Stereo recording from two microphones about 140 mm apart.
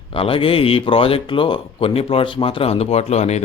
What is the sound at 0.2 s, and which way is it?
Speech, 40° left (ahead or behind).